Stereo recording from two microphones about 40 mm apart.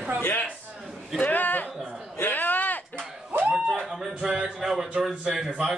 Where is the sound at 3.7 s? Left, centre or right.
Centre.